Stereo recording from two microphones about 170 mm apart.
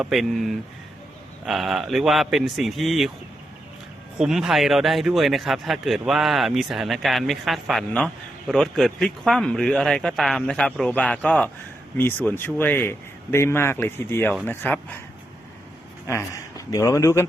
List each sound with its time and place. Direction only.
0.0 s speech: centre (ahead or behind)
4.2 s speech: centre (ahead or behind)
16.0 s a man's voice: 15° left (ahead or behind)